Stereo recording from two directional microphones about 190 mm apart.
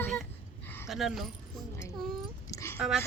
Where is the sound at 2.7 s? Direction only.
5° right (ahead or behind).